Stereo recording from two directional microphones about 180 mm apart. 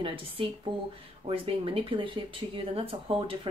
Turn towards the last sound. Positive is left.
turn(degrees=-30)  # may be behind; listen again after turning